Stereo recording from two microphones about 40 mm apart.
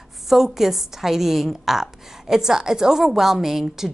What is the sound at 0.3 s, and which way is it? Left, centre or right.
A woman's voice, centre.